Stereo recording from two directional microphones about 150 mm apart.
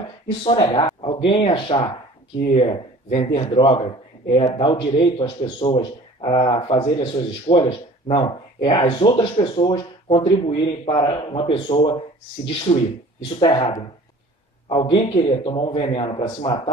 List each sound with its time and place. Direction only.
0.4 s speech: 35° left (ahead or behind)
14.7 s speech: 35° left (ahead or behind)